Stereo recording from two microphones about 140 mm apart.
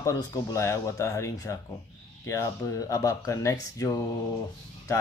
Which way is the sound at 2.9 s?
25° left (ahead or behind).